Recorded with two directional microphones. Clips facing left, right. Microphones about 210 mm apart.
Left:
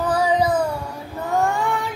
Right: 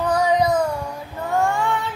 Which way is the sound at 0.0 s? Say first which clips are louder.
Right 1 dB; 5° left (ahead or behind).